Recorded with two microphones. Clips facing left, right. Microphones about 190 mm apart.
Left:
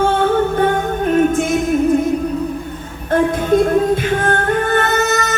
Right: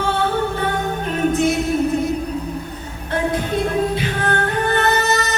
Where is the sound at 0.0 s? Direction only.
50° left (ahead or behind).